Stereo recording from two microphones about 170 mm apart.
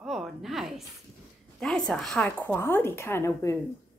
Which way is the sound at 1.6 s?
5° left (ahead or behind).